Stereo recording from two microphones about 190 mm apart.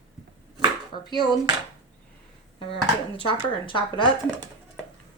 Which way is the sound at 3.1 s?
25° left (ahead or behind).